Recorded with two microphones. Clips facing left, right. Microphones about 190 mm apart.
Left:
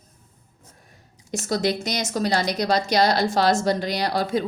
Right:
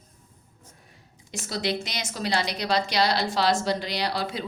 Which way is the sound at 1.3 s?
45° left (ahead or behind).